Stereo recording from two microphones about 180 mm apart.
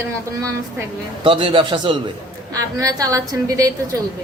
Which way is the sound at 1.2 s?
30° right (ahead or behind).